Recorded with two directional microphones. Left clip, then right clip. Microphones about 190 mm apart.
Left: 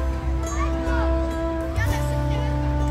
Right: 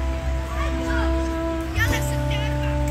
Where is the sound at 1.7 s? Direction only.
25° left (ahead or behind).